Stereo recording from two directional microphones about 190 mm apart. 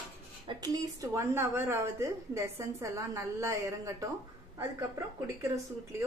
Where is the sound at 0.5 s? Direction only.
20° right (ahead or behind).